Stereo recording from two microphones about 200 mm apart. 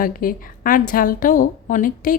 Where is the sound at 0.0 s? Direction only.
45° left (ahead or behind).